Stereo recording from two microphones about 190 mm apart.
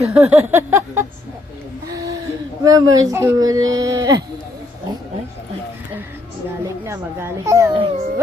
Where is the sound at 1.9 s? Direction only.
20° right (ahead or behind).